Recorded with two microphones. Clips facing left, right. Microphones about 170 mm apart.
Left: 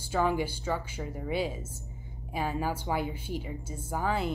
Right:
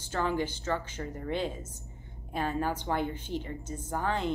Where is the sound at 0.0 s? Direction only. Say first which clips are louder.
Left 2 dB; 10° left (ahead or behind).